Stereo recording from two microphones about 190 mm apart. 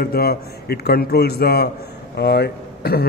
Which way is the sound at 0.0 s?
55° left (ahead or behind).